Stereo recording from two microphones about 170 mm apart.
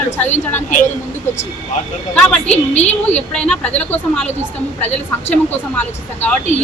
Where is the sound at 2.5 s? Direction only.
40° left (ahead or behind).